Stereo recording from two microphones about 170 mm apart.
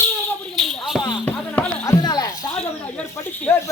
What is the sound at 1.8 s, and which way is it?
Speech, 20° left (ahead or behind).